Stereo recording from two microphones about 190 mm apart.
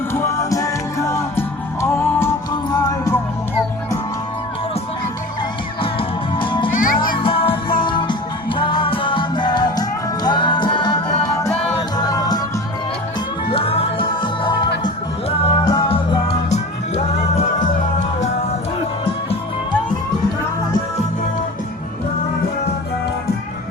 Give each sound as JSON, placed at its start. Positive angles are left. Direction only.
{"t": 0.1, "sound": "music", "side_deg": 15}
{"t": 5.8, "sound": "music", "side_deg": 25}
{"t": 6.7, "sound": "music", "side_deg": 45}
{"t": 7.2, "sound": "music", "side_deg": 30}
{"t": 13.5, "sound": "music", "side_deg": 30}